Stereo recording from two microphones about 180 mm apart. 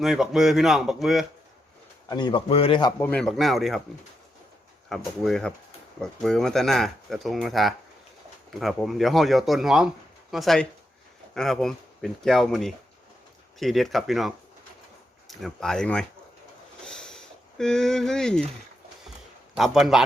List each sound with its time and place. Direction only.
0.0 s speech: centre (ahead or behind)
2.0 s a man's voice: 25° left (ahead or behind)
3.0 s speech: 5° left (ahead or behind)
4.9 s speech: centre (ahead or behind)
16.8 s a sound: 5° left (ahead or behind)
19.5 s speech: centre (ahead or behind)